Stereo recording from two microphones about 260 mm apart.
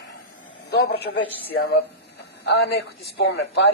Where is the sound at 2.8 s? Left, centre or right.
Left.